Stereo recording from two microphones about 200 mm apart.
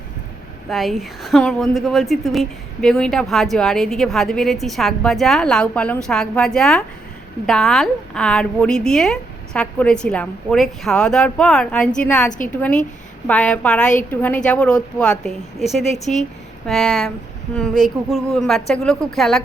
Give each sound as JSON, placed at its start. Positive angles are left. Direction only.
{"t": 0.7, "sound": "a woman's voice", "side_deg": 0}